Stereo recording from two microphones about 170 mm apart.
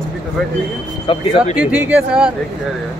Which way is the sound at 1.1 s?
30° left (ahead or behind).